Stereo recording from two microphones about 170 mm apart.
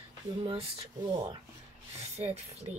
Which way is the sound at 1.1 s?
30° right (ahead or behind).